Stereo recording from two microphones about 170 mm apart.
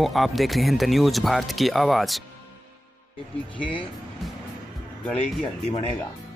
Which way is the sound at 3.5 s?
30° left (ahead or behind).